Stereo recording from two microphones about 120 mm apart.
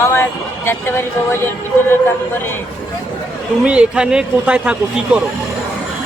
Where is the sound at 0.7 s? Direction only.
20° left (ahead or behind).